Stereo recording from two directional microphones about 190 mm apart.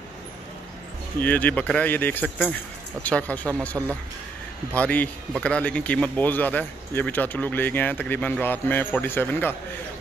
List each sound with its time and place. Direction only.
1.2 s speech: 10° left (ahead or behind)
3.8 s speech: 5° right (ahead or behind)
4.7 s speech: 10° left (ahead or behind)